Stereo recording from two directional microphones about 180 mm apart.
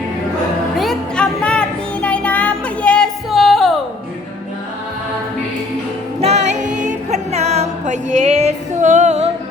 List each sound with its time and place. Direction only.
0.8 s music: 5° left (ahead or behind)
6.1 s music: 35° right (ahead or behind)